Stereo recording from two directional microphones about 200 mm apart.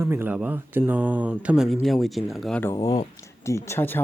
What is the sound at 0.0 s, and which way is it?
Speech, 10° right (ahead or behind).